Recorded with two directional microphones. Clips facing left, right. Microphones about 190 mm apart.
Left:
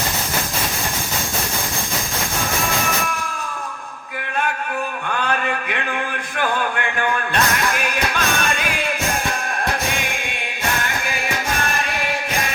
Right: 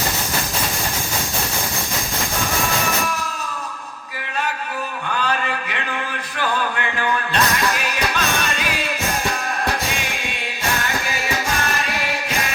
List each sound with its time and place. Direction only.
5.2 s a sound: 55° left (ahead or behind)
7.7 s music: 50° left (ahead or behind)
10.0 s music: 55° left (ahead or behind)